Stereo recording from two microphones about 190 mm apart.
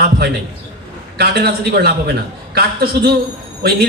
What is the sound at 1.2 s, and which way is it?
Speech, 55° right (ahead or behind).